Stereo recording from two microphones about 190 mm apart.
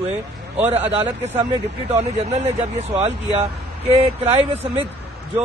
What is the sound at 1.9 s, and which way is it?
Speech, 35° right (ahead or behind).